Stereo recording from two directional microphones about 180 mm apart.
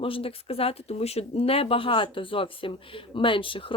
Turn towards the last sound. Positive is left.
turn(degrees=30)  # may be behind; listen again after turning